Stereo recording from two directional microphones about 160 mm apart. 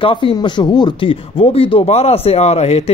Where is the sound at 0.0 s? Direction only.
35° left (ahead or behind).